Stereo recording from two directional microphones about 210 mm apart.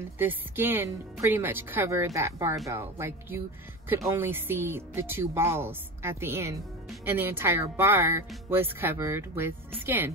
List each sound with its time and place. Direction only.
0.2 s speech: 10° right (ahead or behind)